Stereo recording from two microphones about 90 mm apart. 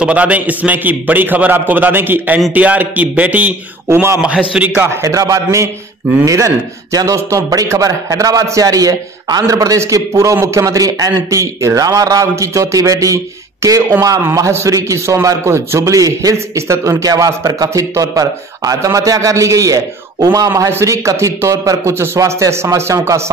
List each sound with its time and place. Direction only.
0.0 s a man's voice: 15° right (ahead or behind)
3.9 s a man's voice: 30° right (ahead or behind)
4.5 s a man's voice: 15° right (ahead or behind)
5.0 s a man's voice: 35° right (ahead or behind)